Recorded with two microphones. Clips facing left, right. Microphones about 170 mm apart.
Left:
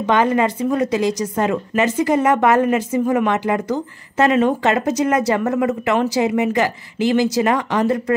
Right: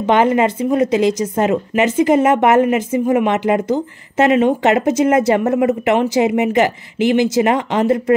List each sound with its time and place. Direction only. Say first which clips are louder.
0.0 s speech: right 3 dB; 25° right (ahead or behind)